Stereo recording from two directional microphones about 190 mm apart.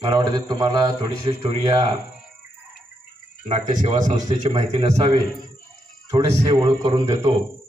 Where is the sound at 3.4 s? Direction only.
40° right (ahead or behind); by 7.3 s 20° right (ahead or behind).